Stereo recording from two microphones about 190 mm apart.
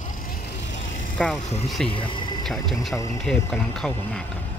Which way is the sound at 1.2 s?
Centre (ahead or behind).